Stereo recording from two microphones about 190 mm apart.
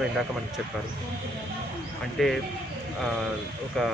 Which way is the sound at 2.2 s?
Centre (ahead or behind).